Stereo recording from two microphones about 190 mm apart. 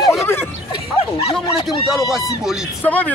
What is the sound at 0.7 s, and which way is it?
Speech, 30° left (ahead or behind).